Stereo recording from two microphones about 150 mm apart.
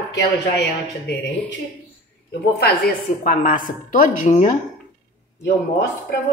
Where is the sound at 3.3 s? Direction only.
60° left (ahead or behind).